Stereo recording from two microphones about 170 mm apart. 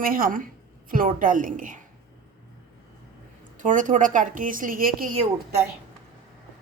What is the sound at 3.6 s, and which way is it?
A woman's voice, 50° right (ahead or behind).